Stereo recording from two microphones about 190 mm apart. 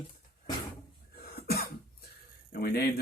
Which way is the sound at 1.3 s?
55° left (ahead or behind).